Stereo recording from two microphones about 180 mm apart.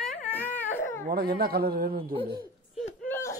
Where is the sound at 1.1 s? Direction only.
55° right (ahead or behind).